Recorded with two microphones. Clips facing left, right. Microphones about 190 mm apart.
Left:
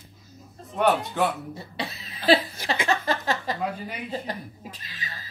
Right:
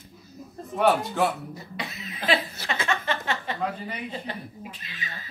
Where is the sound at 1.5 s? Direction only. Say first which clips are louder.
Left 2 dB; 30° left (ahead or behind).